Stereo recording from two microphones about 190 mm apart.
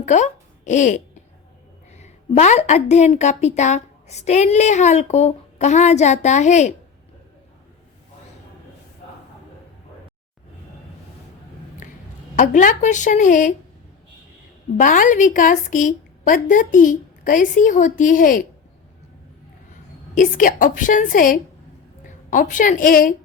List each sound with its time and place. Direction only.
0.0 s a woman's voice: 40° left (ahead or behind)
12.4 s a woman's voice: 40° left (ahead or behind)
14.8 s a woman's voice: 45° left (ahead or behind)
20.1 s a woman's voice: 45° left (ahead or behind)